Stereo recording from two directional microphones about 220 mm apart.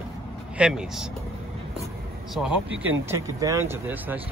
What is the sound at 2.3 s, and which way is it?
Speech, 5° right (ahead or behind).